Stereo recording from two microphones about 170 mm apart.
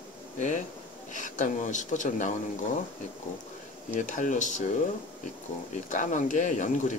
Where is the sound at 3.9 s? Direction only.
50° left (ahead or behind).